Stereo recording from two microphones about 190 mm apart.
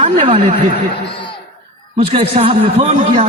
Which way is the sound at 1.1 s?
25° left (ahead or behind).